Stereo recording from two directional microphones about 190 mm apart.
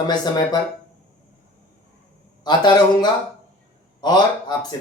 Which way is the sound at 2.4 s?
20° left (ahead or behind).